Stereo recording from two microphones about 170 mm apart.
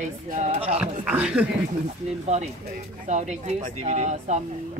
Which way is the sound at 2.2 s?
40° right (ahead or behind).